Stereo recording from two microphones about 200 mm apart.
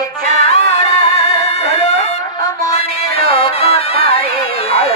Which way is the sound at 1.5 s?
30° left (ahead or behind).